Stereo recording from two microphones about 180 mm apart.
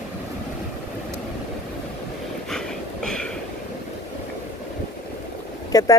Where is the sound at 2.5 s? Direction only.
5° left (ahead or behind).